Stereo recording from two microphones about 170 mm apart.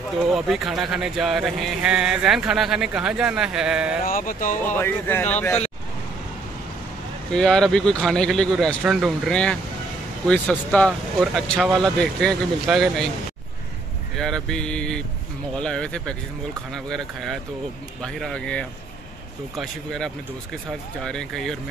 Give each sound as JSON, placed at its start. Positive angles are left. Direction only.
{"t": 0.3, "sound": "speech", "side_deg": 0}
{"t": 4.0, "sound": "speech", "side_deg": 55}
{"t": 4.7, "sound": "speech", "side_deg": 10}
{"t": 7.3, "sound": "speech", "side_deg": 5}
{"t": 9.3, "sound": "speech", "side_deg": 5}
{"t": 10.7, "sound": "speech", "side_deg": 5}
{"t": 14.1, "sound": "speech", "side_deg": 5}